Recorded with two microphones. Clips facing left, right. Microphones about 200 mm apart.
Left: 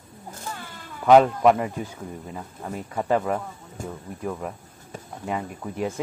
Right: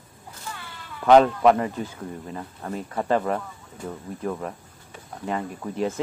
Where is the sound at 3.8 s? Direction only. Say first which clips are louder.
Even; 45° left (ahead or behind).